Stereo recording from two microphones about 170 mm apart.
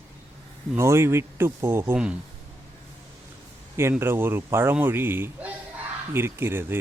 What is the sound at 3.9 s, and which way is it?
Speech, 15° right (ahead or behind).